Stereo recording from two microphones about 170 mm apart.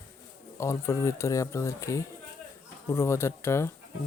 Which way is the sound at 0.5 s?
15° left (ahead or behind).